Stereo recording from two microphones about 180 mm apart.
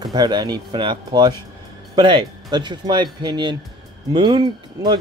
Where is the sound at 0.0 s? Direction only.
25° right (ahead or behind).